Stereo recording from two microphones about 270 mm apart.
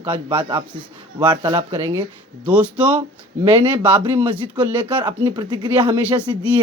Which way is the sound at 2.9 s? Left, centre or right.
Centre.